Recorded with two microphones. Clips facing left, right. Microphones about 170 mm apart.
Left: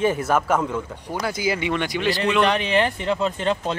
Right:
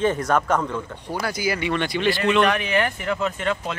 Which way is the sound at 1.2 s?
20° left (ahead or behind).